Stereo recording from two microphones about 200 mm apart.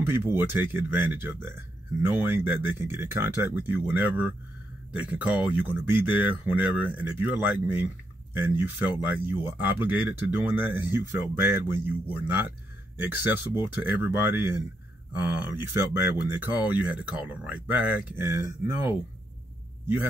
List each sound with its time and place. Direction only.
0.4 s speech: 10° right (ahead or behind)